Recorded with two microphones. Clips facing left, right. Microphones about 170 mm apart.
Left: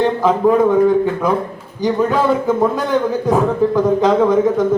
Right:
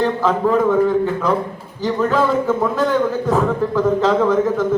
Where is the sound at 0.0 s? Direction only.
15° left (ahead or behind).